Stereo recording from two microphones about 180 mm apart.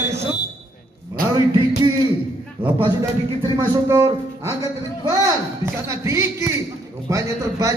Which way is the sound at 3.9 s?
15° right (ahead or behind).